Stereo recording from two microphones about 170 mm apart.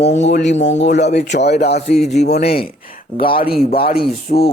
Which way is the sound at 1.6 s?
75° left (ahead or behind).